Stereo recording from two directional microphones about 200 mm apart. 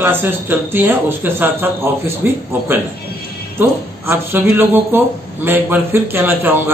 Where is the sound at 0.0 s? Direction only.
10° right (ahead or behind).